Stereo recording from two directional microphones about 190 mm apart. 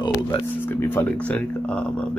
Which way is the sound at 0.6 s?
10° left (ahead or behind).